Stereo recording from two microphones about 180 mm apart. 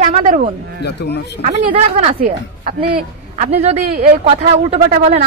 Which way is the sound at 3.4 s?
35° right (ahead or behind).